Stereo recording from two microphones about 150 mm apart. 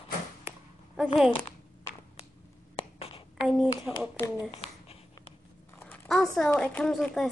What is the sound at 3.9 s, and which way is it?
Speech, 5° right (ahead or behind).